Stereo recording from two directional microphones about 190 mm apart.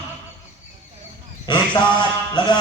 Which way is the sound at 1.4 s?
25° left (ahead or behind).